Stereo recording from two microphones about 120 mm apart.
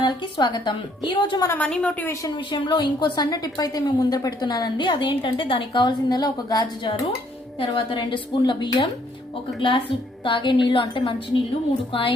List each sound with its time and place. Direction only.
0.0 s a woman's voice: 40° left (ahead or behind)
1.5 s a woman's voice: 10° left (ahead or behind)
2.3 s a woman's voice: 40° left (ahead or behind)
7.7 s a woman's voice: 45° left (ahead or behind)